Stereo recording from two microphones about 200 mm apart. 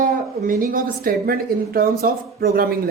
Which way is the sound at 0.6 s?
45° right (ahead or behind).